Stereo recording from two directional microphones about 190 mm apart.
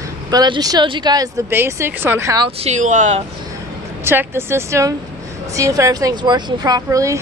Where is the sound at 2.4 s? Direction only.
35° right (ahead or behind).